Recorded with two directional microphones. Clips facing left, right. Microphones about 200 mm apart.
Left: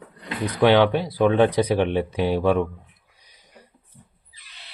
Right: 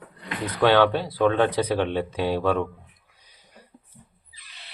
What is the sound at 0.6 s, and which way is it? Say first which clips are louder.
Speech: left 2 dB; 15° left (ahead or behind).